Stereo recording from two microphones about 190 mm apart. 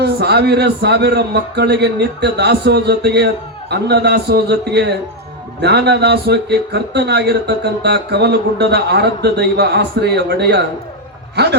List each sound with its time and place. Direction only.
0.0 s speech: 60° right (ahead or behind)